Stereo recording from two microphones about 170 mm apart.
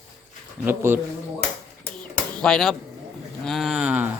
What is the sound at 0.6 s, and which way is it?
Speech, 15° right (ahead or behind).